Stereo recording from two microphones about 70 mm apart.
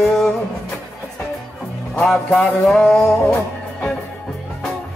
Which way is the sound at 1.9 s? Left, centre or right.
Centre.